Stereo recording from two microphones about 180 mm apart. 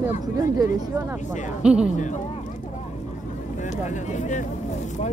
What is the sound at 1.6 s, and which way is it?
Speech, 5° right (ahead or behind).